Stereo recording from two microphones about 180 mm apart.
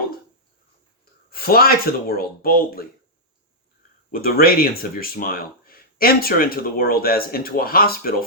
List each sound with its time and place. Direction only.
1.3 s speech: 55° left (ahead or behind)
4.1 s speech: 55° left (ahead or behind)